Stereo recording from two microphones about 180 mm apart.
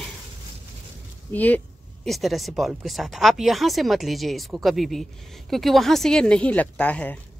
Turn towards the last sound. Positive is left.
turn(degrees=10)  # may be behind; listen again after turning